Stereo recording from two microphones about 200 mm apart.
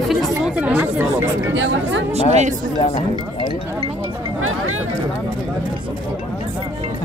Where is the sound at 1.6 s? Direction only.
65° right (ahead or behind).